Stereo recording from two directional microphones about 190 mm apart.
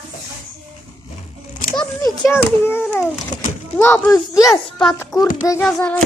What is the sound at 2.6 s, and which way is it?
A child's voice, 10° left (ahead or behind).